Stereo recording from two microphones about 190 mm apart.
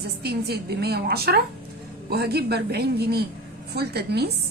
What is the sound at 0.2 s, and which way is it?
A woman's voice, 60° right (ahead or behind).